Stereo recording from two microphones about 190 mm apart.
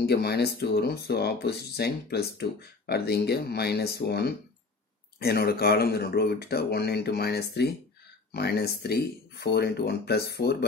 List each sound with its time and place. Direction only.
0.0 s speech: 60° left (ahead or behind)